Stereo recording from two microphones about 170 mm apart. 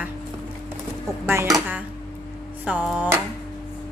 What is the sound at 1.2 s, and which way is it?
A woman's voice, 15° right (ahead or behind).